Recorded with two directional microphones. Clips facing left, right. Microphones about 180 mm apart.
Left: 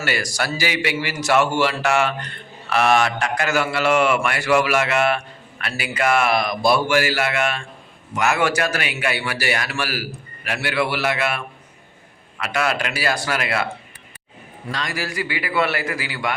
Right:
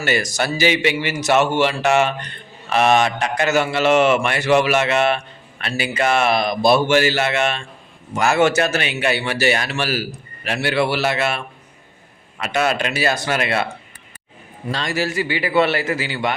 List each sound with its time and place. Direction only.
0.0 s a man's voice: 20° right (ahead or behind)
14.7 s a man's voice: 25° right (ahead or behind)